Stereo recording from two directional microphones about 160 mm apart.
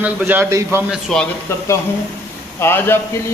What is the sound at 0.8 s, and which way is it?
Speech, centre (ahead or behind).